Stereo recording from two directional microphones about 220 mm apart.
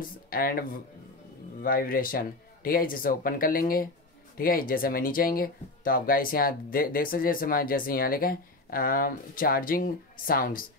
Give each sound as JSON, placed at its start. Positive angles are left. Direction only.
{"t": 0.3, "sound": "speech", "side_deg": 40}